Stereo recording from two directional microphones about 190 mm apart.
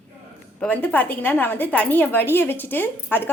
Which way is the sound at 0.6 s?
10° left (ahead or behind).